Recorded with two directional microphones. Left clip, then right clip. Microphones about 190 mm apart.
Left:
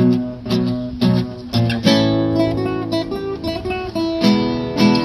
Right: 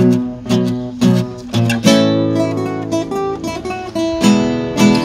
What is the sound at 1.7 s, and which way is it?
Music, 55° right (ahead or behind).